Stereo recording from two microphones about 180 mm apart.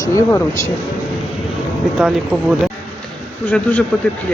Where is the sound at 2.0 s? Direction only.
5° right (ahead or behind).